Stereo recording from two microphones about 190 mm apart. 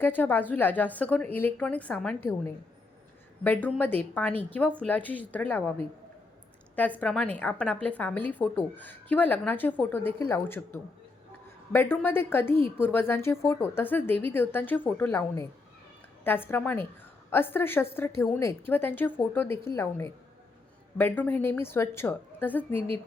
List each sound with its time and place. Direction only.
0.0 s a woman's voice: 10° left (ahead or behind)
3.4 s a woman's voice: 10° left (ahead or behind)
6.7 s a woman's voice: 10° left (ahead or behind)